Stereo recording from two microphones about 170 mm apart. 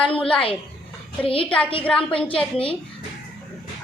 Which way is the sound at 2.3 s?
30° left (ahead or behind).